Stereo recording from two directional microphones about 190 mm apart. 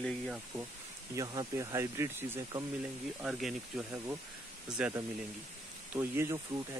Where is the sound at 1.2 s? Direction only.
20° right (ahead or behind).